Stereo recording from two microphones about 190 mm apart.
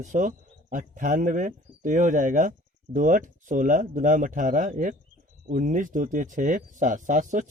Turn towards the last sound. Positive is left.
turn(degrees=-40)  # may be behind; listen again after turning